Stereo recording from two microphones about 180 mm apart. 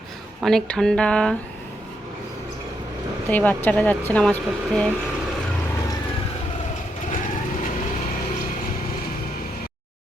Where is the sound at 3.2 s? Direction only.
10° left (ahead or behind).